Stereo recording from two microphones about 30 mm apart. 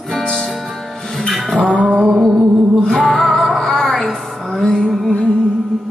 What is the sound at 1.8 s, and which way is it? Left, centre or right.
Music, right.